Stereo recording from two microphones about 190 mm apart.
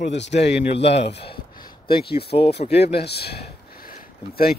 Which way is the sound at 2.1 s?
60° left (ahead or behind).